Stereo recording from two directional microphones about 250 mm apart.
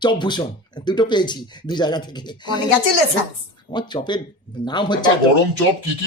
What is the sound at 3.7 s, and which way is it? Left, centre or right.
Speech, centre.